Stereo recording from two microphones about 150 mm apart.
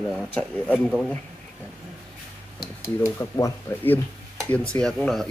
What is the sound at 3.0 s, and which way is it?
Speech, 20° left (ahead or behind).